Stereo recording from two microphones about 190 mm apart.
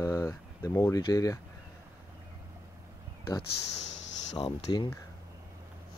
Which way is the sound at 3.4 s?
70° left (ahead or behind).